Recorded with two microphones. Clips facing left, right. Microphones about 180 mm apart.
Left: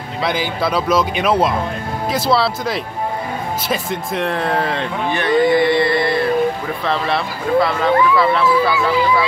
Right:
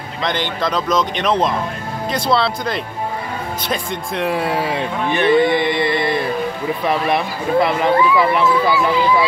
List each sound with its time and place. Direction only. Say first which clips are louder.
0.2 s speech: left 1 dB; 5° left (ahead or behind); by 5.2 s 10° right (ahead or behind)
5.2 s music: even; 20° right (ahead or behind)
6.8 s speech: right 2 dB; 15° right (ahead or behind)